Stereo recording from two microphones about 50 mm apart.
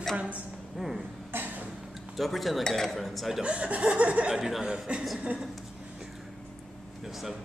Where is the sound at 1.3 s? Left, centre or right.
Right.